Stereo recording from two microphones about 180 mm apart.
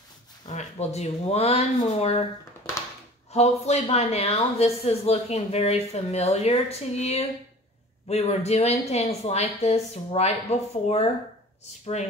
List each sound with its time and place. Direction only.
0.5 s a woman's voice: 40° left (ahead or behind)
3.3 s a woman's voice: 35° left (ahead or behind)